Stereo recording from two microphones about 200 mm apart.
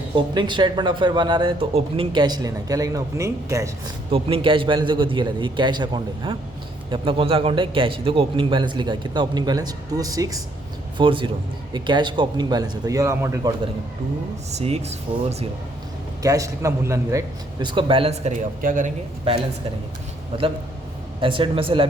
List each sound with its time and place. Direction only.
0.2 s speech: 25° right (ahead or behind)
4.1 s speech: 25° right (ahead or behind)
14.5 s speech: 30° right (ahead or behind)
16.2 s speech: 15° right (ahead or behind); by 18.9 s 40° right (ahead or behind)
20.3 s speech: 30° right (ahead or behind)